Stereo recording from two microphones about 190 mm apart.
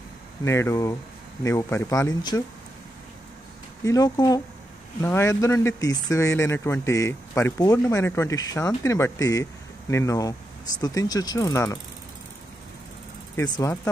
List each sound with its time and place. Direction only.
0.5 s speech: 15° left (ahead or behind)
3.8 s speech: 20° left (ahead or behind)
13.4 s speech: 15° left (ahead or behind)